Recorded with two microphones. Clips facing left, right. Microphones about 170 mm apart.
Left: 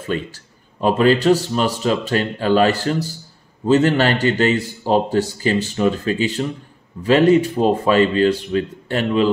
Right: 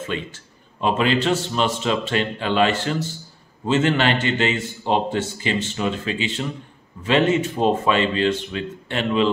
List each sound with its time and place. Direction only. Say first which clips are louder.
0.0 s a man's voice: left 4 dB; 40° left (ahead or behind)